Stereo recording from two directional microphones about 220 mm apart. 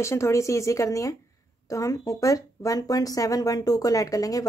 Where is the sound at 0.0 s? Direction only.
10° left (ahead or behind).